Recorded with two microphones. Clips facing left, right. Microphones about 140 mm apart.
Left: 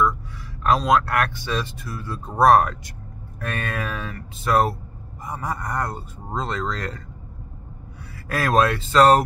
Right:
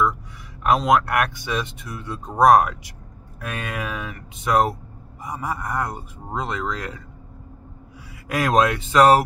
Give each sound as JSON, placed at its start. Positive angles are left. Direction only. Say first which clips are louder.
{"t": 0.7, "sound": "speech", "louder": "right 1 dB", "side_deg": -20}
{"t": 8.3, "sound": "speech", "louder": "right 1 dB", "side_deg": -15}